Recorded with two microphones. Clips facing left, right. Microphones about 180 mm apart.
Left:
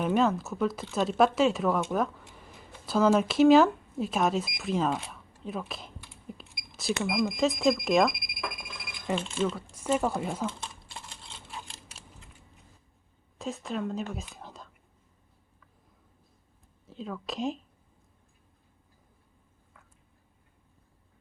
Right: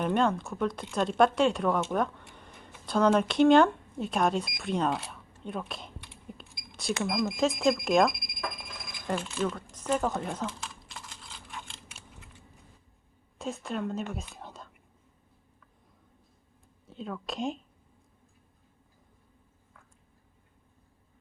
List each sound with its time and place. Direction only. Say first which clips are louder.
0.0 s speech: left 1 dB; 5° left (ahead or behind)
5.4 s a sound: even; centre (ahead or behind)
6.7 s cash register: left 2 dB; centre (ahead or behind)
7.1 s speech: left 1 dB; centre (ahead or behind)
9.1 s speech: left 2 dB; 25° left (ahead or behind)
9.7 s speech: left 1 dB; 10° left (ahead or behind)
10.6 s computer keyboard: left 1 dB; 30° left (ahead or behind)
13.4 s speech: even; centre (ahead or behind)
16.9 s speech: even; centre (ahead or behind)